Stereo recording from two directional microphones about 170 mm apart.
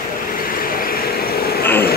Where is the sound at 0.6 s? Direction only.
60° left (ahead or behind).